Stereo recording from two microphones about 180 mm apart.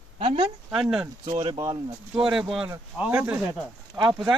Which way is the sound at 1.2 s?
25° right (ahead or behind).